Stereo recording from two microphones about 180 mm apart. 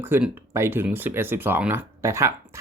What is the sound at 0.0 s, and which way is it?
Speech, 10° right (ahead or behind).